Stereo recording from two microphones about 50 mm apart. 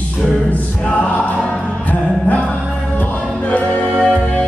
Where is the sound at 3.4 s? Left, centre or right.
Left.